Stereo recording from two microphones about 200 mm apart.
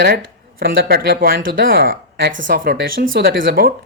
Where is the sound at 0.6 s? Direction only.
50° right (ahead or behind).